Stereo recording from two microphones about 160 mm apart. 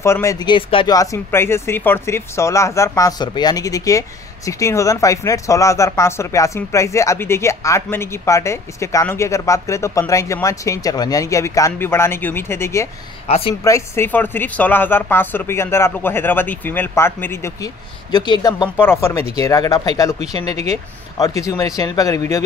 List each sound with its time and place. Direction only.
0.0 s speech: 20° left (ahead or behind); by 0.9 s 35° left (ahead or behind)
0.9 s speech: 20° left (ahead or behind)
13.3 s speech: 35° left (ahead or behind)
13.7 s speech: 15° left (ahead or behind)
18.8 s speech: 15° left (ahead or behind)
21.2 s speech: 20° left (ahead or behind)